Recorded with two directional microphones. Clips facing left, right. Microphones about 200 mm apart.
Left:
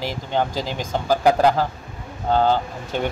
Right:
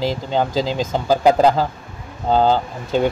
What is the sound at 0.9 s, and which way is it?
Speech, 15° right (ahead or behind).